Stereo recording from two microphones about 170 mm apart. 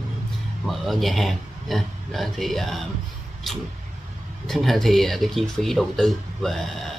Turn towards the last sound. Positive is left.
turn(degrees=0)  # may be behind; listen again after turning